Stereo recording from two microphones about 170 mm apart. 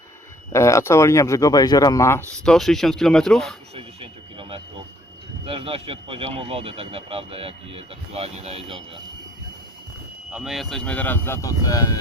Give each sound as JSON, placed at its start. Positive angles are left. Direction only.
{"t": 0.5, "sound": "speech", "side_deg": 15}
{"t": 2.4, "sound": "speech", "side_deg": 5}
{"t": 3.8, "sound": "a sound", "side_deg": -30}
{"t": 5.5, "sound": "speech", "side_deg": -35}
{"t": 10.3, "sound": "speech", "side_deg": 0}